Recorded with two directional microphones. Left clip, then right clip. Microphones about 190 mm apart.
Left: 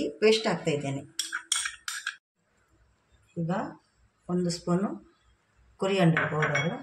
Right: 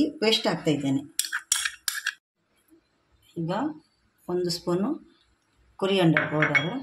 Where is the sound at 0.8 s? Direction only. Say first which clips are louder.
Right 6 dB; centre (ahead or behind).